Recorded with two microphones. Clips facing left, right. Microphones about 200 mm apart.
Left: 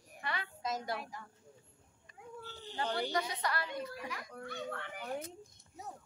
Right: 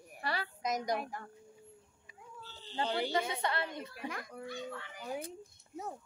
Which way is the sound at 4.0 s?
55° right (ahead or behind).